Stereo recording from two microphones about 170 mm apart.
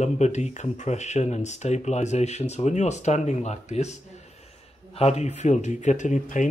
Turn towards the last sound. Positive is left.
turn(degrees=45)  # may be behind; listen again after turning